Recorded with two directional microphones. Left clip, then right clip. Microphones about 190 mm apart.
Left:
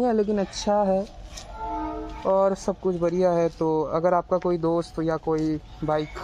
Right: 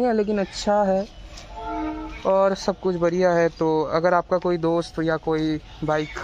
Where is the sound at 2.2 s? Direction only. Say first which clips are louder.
Right 2 dB; 20° right (ahead or behind).